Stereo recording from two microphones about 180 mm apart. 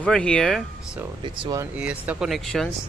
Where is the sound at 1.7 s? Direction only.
5° right (ahead or behind).